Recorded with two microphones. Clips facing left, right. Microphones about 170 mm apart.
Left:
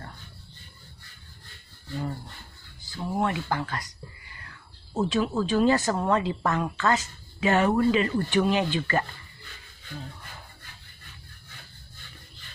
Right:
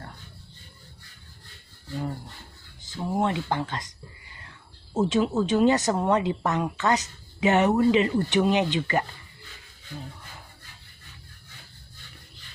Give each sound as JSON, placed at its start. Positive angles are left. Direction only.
{"t": 2.8, "sound": "speech", "side_deg": -20}